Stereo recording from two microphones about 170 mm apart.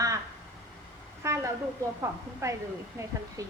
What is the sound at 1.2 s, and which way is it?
A woman's voice, 15° right (ahead or behind).